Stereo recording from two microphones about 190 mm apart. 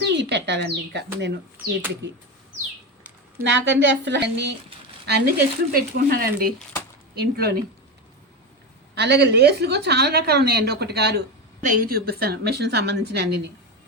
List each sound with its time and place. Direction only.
0.0 s a woman's voice: 65° right (ahead or behind)
1.5 s speech: 10° right (ahead or behind)
3.4 s a woman's voice: 70° right (ahead or behind); by 7.5 s 55° right (ahead or behind)
9.0 s a woman's voice: 60° right (ahead or behind)
11.6 s a woman's voice: 45° right (ahead or behind); by 13.5 s 60° right (ahead or behind)